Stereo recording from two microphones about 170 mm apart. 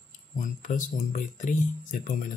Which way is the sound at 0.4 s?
50° left (ahead or behind).